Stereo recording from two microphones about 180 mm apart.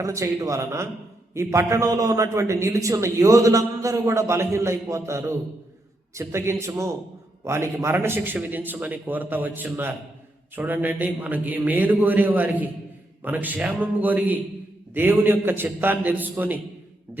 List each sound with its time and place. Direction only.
0.0 s a man's voice: 15° right (ahead or behind)